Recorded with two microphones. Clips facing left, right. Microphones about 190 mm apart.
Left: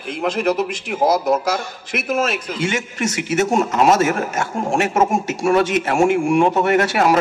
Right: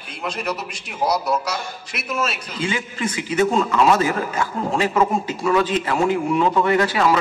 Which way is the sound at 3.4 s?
45° left (ahead or behind).